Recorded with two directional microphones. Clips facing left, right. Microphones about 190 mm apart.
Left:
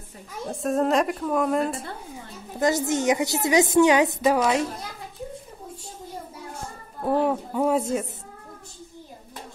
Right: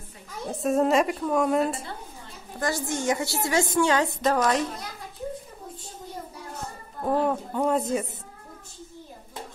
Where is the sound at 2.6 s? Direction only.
20° left (ahead or behind).